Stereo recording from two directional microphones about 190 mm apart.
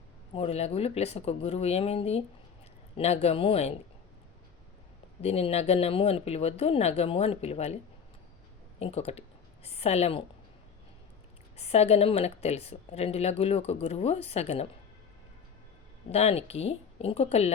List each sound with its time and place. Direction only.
0.3 s speech: 35° left (ahead or behind)
5.2 s speech: 35° left (ahead or behind)
8.8 s speech: 35° left (ahead or behind)
11.5 s speech: 30° left (ahead or behind)
16.1 s speech: 30° left (ahead or behind)